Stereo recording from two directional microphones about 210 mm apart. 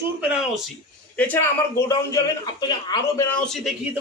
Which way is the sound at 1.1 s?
10° left (ahead or behind).